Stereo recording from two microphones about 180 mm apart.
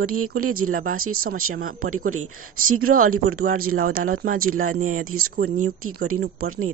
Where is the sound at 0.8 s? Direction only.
55° right (ahead or behind).